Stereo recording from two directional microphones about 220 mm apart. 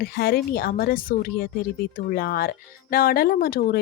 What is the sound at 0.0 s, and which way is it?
Speech, 45° left (ahead or behind).